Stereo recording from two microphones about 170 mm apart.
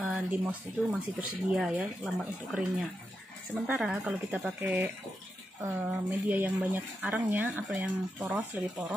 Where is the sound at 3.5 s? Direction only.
5° right (ahead or behind).